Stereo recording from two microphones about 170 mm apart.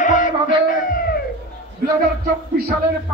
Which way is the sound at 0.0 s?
50° left (ahead or behind).